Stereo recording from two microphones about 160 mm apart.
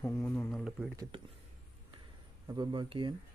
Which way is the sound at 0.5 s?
5° left (ahead or behind).